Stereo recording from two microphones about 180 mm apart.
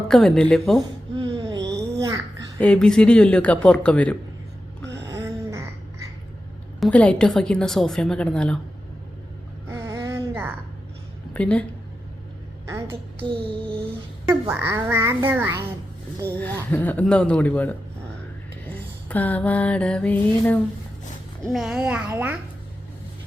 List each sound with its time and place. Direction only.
0.1 s a woman's voice: 5° left (ahead or behind)
1.1 s a sound: 25° right (ahead or behind)
2.6 s speech: 5° left (ahead or behind)
4.9 s gasp: 15° right (ahead or behind)
6.7 s a woman's voice: 5° left (ahead or behind)
9.6 s a sound: 15° right (ahead or behind)
11.3 s a woman's voice: 5° left (ahead or behind)
12.6 s a sound: 15° right (ahead or behind)
13.1 s music: 30° right (ahead or behind)
14.3 s a child's voice: 10° right (ahead or behind)
16.2 s speech: 10° left (ahead or behind)
19.0 s a woman's voice: 10° left (ahead or behind); by 22.4 s 10° right (ahead or behind)